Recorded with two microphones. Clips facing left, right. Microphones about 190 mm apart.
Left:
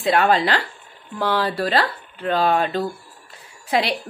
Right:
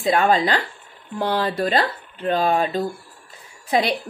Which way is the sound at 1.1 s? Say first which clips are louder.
Even; 20° right (ahead or behind).